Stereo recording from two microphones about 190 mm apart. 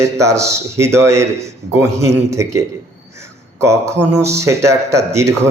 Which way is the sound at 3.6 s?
15° right (ahead or behind).